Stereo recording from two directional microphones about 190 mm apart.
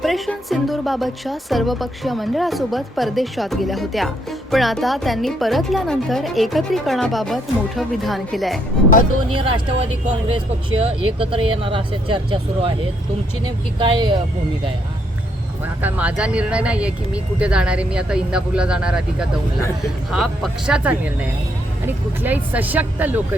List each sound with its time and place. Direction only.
0.0 s a woman's voice: centre (ahead or behind)
9.3 s speech: 30° right (ahead or behind)
15.8 s a woman's voice: 10° right (ahead or behind)